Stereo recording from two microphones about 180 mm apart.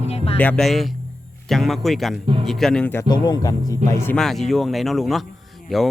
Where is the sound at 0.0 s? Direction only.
35° left (ahead or behind).